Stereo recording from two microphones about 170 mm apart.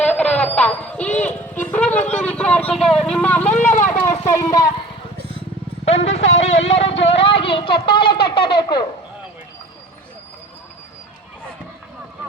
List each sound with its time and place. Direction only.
0.0 s music: 5° left (ahead or behind)
2.2 s vehicle: 5° left (ahead or behind)
4.3 s speech: 20° left (ahead or behind)
5.8 s speech: 40° left (ahead or behind)